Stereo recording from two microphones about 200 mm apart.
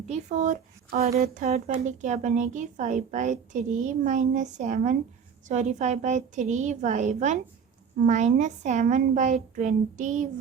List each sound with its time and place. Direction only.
0.1 s a woman's voice: 35° right (ahead or behind)